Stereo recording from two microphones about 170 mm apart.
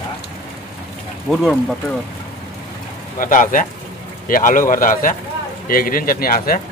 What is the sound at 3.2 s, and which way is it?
A man's voice, 50° left (ahead or behind).